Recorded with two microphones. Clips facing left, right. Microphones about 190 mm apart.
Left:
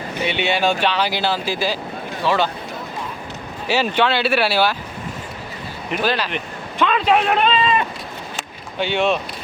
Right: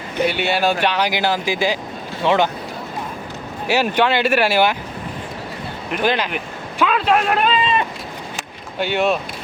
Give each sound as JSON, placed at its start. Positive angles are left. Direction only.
{"t": 0.3, "sound": "speech", "side_deg": -5}
{"t": 3.7, "sound": "speech", "side_deg": -10}
{"t": 6.0, "sound": "speech", "side_deg": -15}
{"t": 6.3, "sound": "speech", "side_deg": -5}
{"t": 9.0, "sound": "speech", "side_deg": -5}